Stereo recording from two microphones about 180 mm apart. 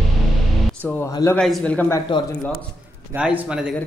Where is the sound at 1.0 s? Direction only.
20° left (ahead or behind).